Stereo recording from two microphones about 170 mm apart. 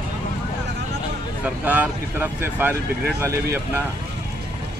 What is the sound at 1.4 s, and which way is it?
Speech, 10° right (ahead or behind).